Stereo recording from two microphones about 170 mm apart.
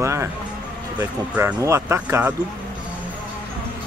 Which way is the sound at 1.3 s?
10° right (ahead or behind).